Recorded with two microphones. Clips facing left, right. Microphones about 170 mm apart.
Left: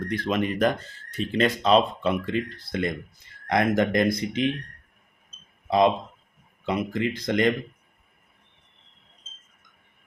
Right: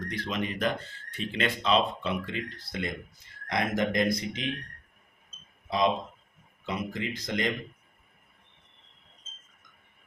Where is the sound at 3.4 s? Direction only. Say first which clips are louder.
Left 6 dB; 55° left (ahead or behind).